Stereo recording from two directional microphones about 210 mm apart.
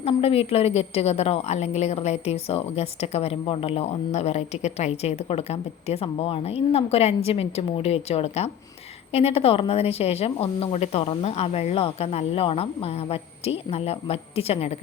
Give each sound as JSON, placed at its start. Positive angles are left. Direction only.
{"t": 0.0, "sound": "a woman's voice", "side_deg": 30}